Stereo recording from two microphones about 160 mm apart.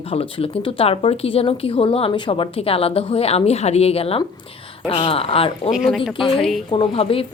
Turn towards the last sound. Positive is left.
turn(degrees=35)  # may be behind; listen again after turning